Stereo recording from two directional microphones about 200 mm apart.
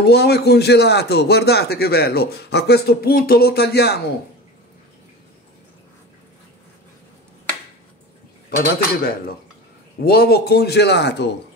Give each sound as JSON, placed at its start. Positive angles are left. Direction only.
{"t": 0.0, "sound": "a man's voice", "side_deg": 55}
{"t": 8.5, "sound": "a man's voice", "side_deg": 50}